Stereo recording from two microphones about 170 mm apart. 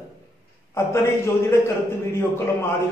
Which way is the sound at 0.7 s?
15° left (ahead or behind).